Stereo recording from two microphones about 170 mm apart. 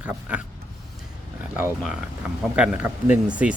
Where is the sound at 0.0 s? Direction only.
5° right (ahead or behind).